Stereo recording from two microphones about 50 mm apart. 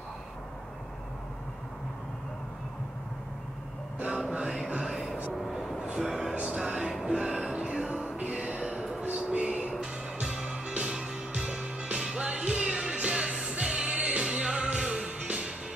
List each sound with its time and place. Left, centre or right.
4.2 s music: centre
4.8 s vehicle: centre
5.9 s a sound: centre
6.4 s music: centre
9.0 s a sound: right
10.4 s music: right
14.3 s music: centre